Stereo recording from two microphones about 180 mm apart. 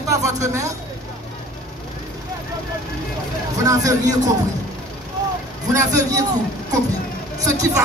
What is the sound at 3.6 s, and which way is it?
Speech, 20° right (ahead or behind).